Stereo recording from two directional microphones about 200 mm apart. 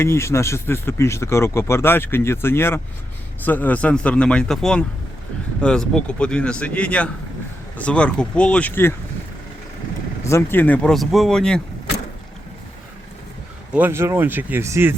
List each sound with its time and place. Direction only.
0.0 s speech: 15° left (ahead or behind)
10.2 s speech: 10° left (ahead or behind)
13.7 s speech: 10° right (ahead or behind)